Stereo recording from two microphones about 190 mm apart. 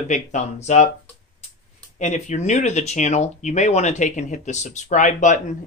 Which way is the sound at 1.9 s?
40° left (ahead or behind).